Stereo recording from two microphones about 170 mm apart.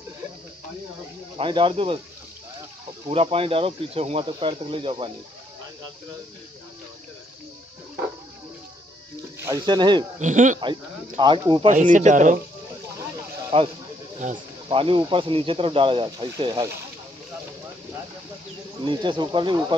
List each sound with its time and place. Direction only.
1.4 s speech: 30° right (ahead or behind)
3.1 s speech: 35° right (ahead or behind)
9.4 s speech: 25° right (ahead or behind)
10.1 s speech: 45° right (ahead or behind)
10.6 s speech: 25° right (ahead or behind)
11.7 s speech: 50° right (ahead or behind)
13.5 s speech: 35° right (ahead or behind)
18.9 s speech: 25° right (ahead or behind)